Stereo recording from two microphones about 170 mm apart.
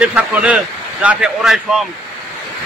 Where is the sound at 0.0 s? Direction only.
5° right (ahead or behind).